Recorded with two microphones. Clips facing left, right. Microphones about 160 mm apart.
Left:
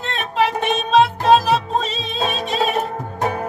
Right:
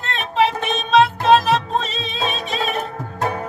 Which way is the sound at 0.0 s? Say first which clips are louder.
Right 1 dB; centre (ahead or behind).